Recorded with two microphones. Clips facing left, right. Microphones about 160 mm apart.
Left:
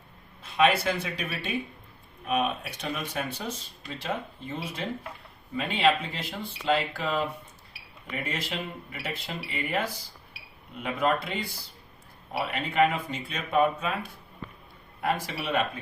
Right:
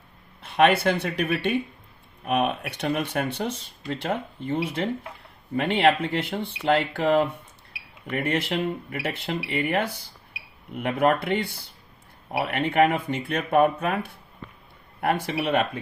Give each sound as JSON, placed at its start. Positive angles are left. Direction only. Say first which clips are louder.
{"t": 0.4, "sound": "speech", "louder": "right 4 dB", "side_deg": -60}